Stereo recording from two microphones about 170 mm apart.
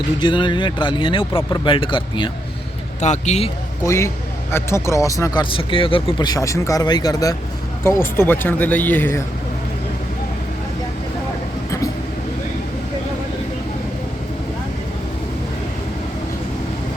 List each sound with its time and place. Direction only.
0.2 s speech: 30° left (ahead or behind)
3.0 s speech: 40° left (ahead or behind)
3.8 s speech: 15° left (ahead or behind)